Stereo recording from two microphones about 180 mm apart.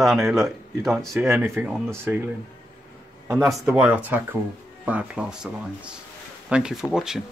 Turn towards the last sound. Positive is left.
turn(degrees=-5)  # may be behind; listen again after turning